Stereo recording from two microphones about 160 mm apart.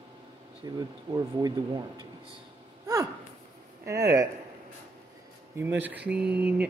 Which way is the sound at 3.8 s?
20° right (ahead or behind).